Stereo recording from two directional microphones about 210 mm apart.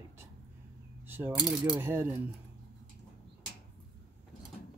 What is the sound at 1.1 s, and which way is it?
Speech, 10° right (ahead or behind).